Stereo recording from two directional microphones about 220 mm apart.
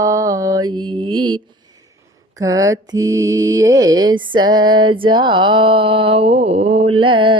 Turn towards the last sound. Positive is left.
turn(degrees=-20)  # may be behind; listen again after turning